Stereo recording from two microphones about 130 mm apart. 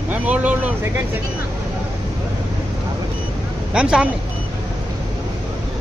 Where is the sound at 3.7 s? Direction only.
5° right (ahead or behind).